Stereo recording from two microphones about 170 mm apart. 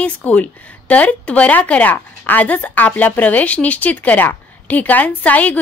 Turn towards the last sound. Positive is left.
turn(degrees=10)  # may be behind; listen again after turning